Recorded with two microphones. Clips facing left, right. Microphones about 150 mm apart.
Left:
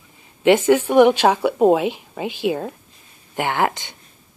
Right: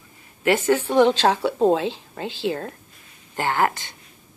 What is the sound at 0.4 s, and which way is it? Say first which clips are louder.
Speech: left 5 dB; 20° left (ahead or behind).